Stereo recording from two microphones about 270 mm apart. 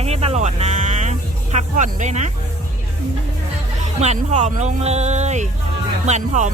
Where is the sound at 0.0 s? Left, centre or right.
Right.